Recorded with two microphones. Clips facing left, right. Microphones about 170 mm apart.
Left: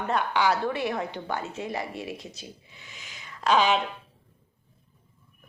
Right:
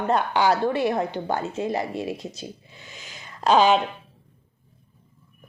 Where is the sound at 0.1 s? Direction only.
40° right (ahead or behind).